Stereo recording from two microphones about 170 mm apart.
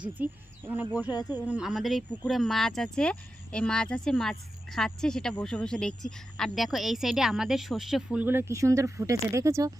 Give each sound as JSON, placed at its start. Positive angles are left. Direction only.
{"t": 0.0, "sound": "speech", "side_deg": -10}
{"t": 1.1, "sound": "speech", "side_deg": 25}
{"t": 1.5, "sound": "speech", "side_deg": -5}